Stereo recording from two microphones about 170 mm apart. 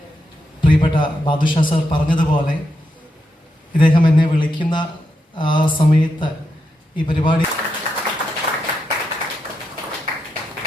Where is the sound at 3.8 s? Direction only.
30° left (ahead or behind).